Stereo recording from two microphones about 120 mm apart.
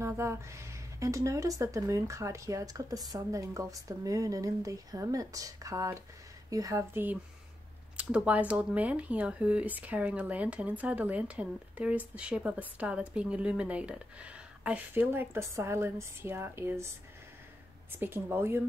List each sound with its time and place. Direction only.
0.0 s a woman's voice: 20° right (ahead or behind)
17.9 s speech: 15° right (ahead or behind)